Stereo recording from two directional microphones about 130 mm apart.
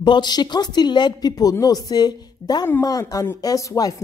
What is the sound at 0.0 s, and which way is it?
Speech, 35° left (ahead or behind).